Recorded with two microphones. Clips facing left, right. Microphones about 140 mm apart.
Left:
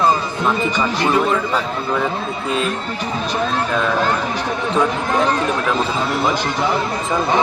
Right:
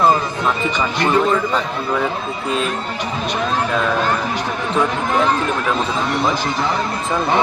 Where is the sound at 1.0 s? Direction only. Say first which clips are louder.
Right 2 dB; 5° left (ahead or behind).